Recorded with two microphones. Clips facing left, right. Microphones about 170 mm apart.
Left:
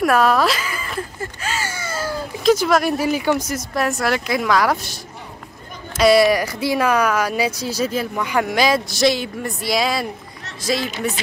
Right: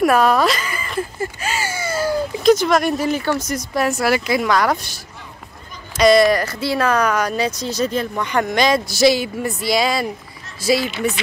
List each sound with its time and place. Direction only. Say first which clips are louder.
0.0 s speech: right 1 dB; centre (ahead or behind)
1.4 s a sound: left 1 dB; 10° right (ahead or behind)
2.4 s speech: right 1 dB; 5° left (ahead or behind)